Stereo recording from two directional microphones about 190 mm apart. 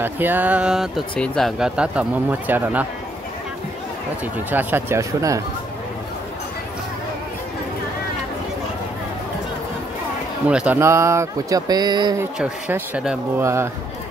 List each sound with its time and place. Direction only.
0.0 s speech: 10° right (ahead or behind)
4.5 s speech: 10° right (ahead or behind)
10.5 s speech: 5° right (ahead or behind)
12.2 s speech: 10° right (ahead or behind)